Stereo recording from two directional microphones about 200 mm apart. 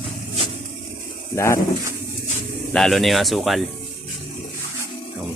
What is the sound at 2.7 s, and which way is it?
Speech, centre (ahead or behind).